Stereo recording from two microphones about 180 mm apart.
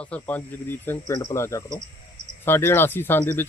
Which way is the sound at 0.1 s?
10° left (ahead or behind).